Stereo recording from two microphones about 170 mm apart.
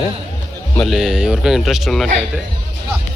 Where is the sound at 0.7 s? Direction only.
Centre (ahead or behind).